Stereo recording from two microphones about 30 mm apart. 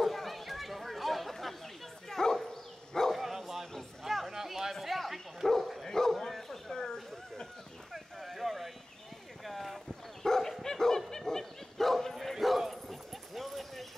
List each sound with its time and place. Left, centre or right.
0.0 s chatter: centre
2.0 s bow-wow: centre
3.1 s dog: centre
4.0 s a sound: centre
4.4 s bow-wow: centre
5.9 s bow-wow: centre
6.7 s a sound: left
7.9 s a sound: centre
9.4 s clip-clop: centre
10.2 s dog: centre
12.2 s bow-wow: centre
12.8 s dog: centre